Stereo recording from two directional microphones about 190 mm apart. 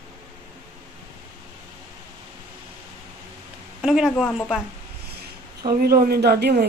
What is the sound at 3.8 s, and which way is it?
Speech, centre (ahead or behind).